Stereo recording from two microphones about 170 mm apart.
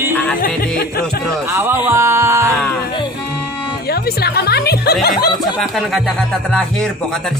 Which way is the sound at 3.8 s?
65° left (ahead or behind).